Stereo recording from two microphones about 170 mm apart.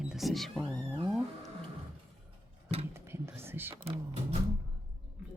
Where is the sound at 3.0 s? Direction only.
15° right (ahead or behind).